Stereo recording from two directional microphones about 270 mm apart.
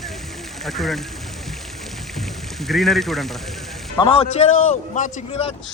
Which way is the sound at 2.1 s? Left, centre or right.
Centre.